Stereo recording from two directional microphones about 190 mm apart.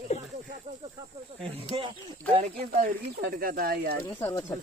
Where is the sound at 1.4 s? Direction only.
30° right (ahead or behind).